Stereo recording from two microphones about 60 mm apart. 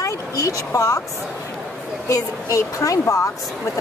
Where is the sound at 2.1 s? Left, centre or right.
Left.